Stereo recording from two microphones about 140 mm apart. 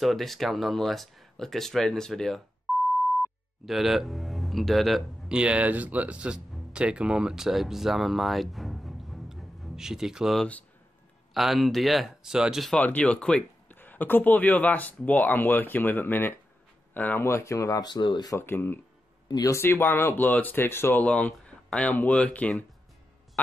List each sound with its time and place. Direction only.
0.0 s speech: centre (ahead or behind)
2.7 s beep: centre (ahead or behind)
3.6 s speech: centre (ahead or behind)
12.7 s speech: 10° left (ahead or behind); by 18.3 s 35° left (ahead or behind)
18.3 s speech: 15° left (ahead or behind)